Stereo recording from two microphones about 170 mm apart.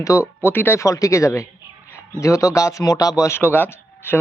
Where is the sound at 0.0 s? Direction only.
20° left (ahead or behind).